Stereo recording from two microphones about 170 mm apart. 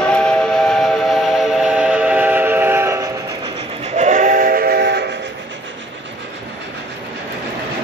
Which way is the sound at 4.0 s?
45° right (ahead or behind).